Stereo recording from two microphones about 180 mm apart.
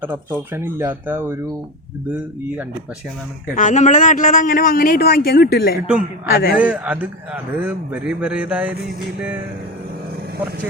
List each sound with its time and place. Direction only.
0.0 s a man's voice: 10° right (ahead or behind)
3.5 s a man's voice: 45° left (ahead or behind)
6.6 s a man's voice: 5° right (ahead or behind)